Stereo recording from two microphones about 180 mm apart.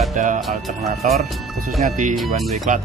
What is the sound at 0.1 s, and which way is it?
Speech, 45° right (ahead or behind).